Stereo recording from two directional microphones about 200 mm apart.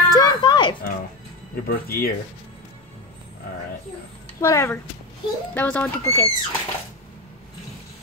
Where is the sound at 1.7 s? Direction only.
50° left (ahead or behind).